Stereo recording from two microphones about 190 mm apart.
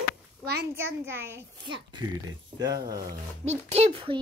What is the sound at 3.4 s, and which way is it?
Speech, 35° right (ahead or behind).